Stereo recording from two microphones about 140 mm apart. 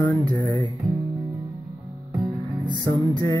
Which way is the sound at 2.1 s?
30° right (ahead or behind).